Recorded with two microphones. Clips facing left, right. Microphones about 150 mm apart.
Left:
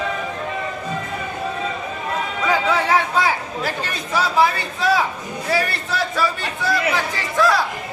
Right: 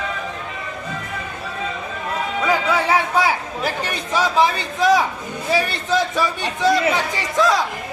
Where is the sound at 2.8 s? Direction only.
15° right (ahead or behind).